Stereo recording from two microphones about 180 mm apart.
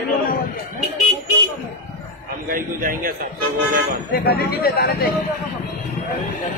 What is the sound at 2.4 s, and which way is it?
Speech, 50° right (ahead or behind).